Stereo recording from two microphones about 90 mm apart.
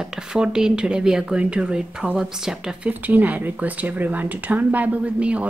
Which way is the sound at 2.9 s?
20° right (ahead or behind).